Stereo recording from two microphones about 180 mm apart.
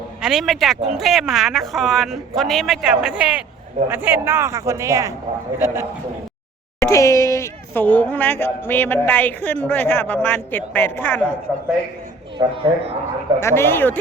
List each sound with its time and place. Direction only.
0.2 s speech: centre (ahead or behind)
6.7 s speech: 15° left (ahead or behind)
12.4 s speech: 30° right (ahead or behind)
13.4 s speech: 15° left (ahead or behind)